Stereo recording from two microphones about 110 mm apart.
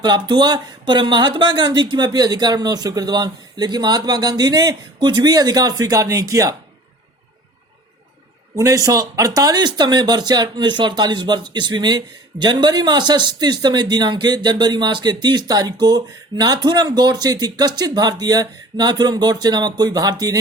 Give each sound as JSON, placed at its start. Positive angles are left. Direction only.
{"t": 0.0, "sound": "speech", "side_deg": -40}
{"t": 8.5, "sound": "speech", "side_deg": -30}